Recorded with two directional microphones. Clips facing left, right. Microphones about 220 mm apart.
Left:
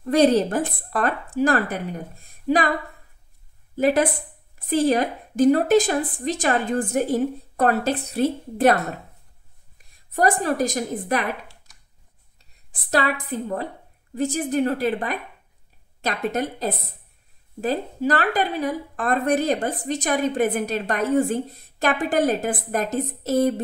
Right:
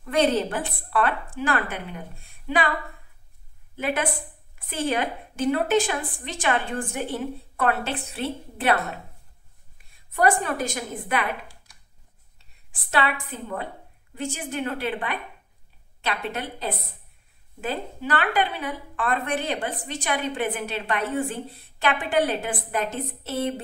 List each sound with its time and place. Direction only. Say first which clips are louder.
0.0 s a woman's voice: left 5 dB; 40° left (ahead or behind)
3.7 s a woman's voice: left 7 dB; 40° left (ahead or behind)
10.1 s a woman's voice: left 2 dB; 35° left (ahead or behind)
12.4 s a sound: left 2 dB; 40° left (ahead or behind)
14.1 s a woman's voice: left 8 dB; 35° left (ahead or behind)